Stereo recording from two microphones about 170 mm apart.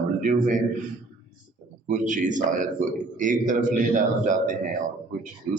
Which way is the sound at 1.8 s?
50° right (ahead or behind).